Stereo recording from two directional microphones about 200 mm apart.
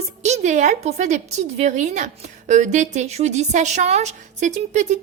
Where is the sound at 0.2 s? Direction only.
35° right (ahead or behind).